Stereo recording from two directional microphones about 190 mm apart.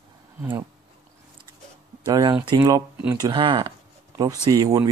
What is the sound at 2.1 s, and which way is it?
Speech, 20° right (ahead or behind).